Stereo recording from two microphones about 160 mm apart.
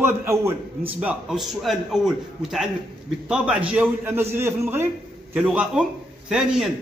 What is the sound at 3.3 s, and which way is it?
A man's voice, 5° right (ahead or behind).